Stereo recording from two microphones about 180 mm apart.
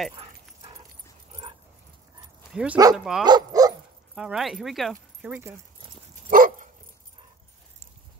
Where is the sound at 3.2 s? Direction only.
20° right (ahead or behind).